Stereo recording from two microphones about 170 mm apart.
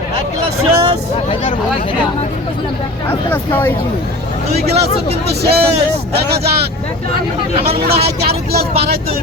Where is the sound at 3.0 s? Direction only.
10° left (ahead or behind).